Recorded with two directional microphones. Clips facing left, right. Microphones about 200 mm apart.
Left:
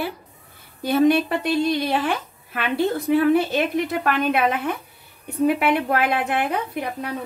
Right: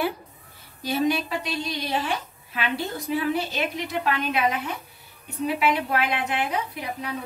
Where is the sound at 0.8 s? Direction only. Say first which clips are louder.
Left 7 dB; 55° left (ahead or behind).